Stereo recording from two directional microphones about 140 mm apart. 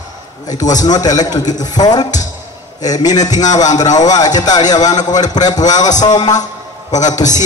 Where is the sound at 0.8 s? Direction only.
25° left (ahead or behind).